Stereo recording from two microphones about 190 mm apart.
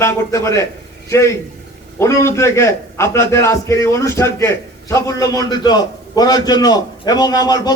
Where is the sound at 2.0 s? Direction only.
15° left (ahead or behind).